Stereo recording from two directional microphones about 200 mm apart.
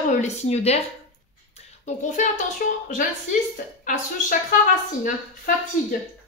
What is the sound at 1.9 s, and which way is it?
A woman's voice, 40° left (ahead or behind).